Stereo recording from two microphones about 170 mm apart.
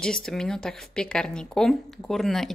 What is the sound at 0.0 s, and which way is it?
A woman's voice, 5° left (ahead or behind).